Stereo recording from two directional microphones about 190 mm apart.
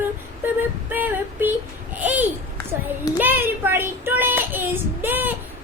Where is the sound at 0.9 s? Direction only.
10° right (ahead or behind).